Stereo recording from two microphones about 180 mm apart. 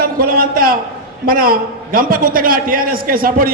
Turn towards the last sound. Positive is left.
turn(degrees=-50)  # may be behind; listen again after turning